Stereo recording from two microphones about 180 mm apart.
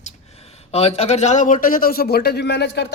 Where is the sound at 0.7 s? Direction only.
35° left (ahead or behind).